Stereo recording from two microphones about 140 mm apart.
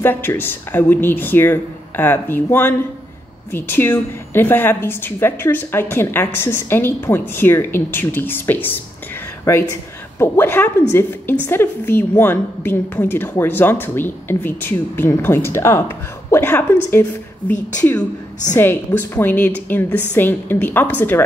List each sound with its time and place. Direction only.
0.0 s a woman's voice: 15° left (ahead or behind)